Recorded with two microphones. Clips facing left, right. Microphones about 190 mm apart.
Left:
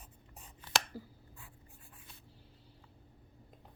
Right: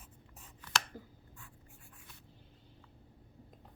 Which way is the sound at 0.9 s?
5° left (ahead or behind).